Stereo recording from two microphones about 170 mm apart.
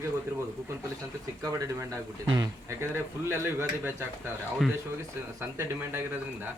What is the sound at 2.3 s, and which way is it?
Speech, 20° right (ahead or behind).